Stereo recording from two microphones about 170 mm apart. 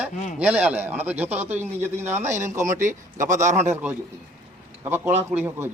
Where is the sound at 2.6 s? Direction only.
50° right (ahead or behind).